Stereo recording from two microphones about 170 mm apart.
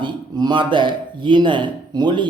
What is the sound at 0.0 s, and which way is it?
A man's voice, 25° right (ahead or behind).